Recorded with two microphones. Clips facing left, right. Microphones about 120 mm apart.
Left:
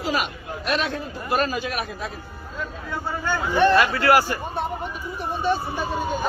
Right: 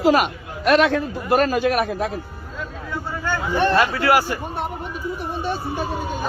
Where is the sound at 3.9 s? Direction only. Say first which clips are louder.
Even; 10° right (ahead or behind).